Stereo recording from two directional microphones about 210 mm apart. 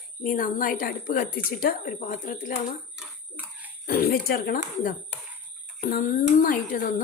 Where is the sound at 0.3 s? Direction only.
40° left (ahead or behind).